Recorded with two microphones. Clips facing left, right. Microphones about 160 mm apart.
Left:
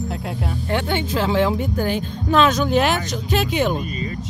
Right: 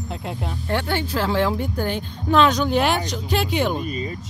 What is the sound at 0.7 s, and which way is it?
Speech, 15° left (ahead or behind).